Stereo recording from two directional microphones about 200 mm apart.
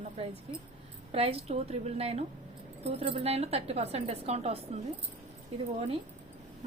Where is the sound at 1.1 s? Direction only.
30° right (ahead or behind).